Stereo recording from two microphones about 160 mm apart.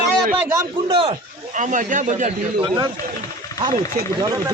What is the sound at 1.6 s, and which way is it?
Speech, 55° right (ahead or behind).